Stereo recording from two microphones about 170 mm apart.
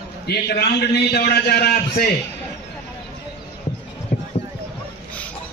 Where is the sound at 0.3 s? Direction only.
75° left (ahead or behind).